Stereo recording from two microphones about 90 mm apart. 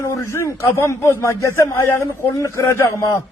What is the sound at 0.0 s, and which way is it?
Speech, 30° left (ahead or behind).